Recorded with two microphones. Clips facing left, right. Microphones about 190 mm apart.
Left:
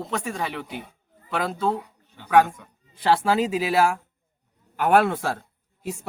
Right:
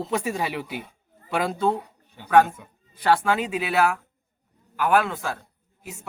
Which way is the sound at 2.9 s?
25° left (ahead or behind).